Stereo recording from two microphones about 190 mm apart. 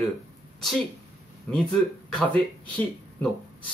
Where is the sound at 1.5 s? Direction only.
10° left (ahead or behind).